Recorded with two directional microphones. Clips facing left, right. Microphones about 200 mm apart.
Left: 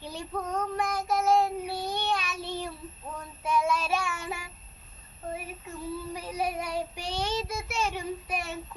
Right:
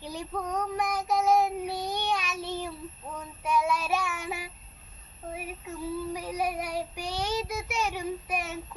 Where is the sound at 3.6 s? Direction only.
15° right (ahead or behind).